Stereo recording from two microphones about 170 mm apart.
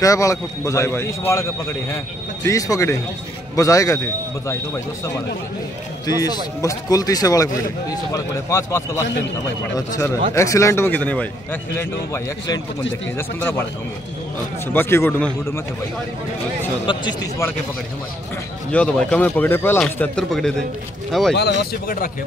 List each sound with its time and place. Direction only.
0.0 s a man's voice: 20° left (ahead or behind)
6.0 s a man's voice: 20° left (ahead or behind)
13.4 s a man's voice: 15° left (ahead or behind)
14.7 s a man's voice: 15° left (ahead or behind)
16.8 s speech: 25° left (ahead or behind)
18.7 s a man's voice: 5° left (ahead or behind)
21.4 s speech: 60° left (ahead or behind)